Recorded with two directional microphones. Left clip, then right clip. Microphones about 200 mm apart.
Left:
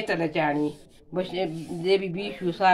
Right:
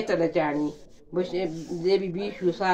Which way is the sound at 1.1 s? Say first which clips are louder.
Even; 45° left (ahead or behind).